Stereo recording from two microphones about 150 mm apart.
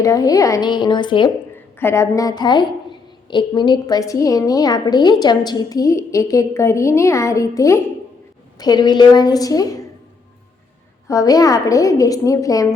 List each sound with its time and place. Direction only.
0.0 s a woman's voice: 25° left (ahead or behind)
1.8 s a woman's voice: 15° left (ahead or behind)
11.1 s a woman's voice: 25° left (ahead or behind)